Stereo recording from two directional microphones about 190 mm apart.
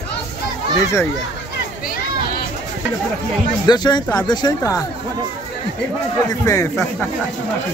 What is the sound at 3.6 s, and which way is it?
Speech, 20° left (ahead or behind).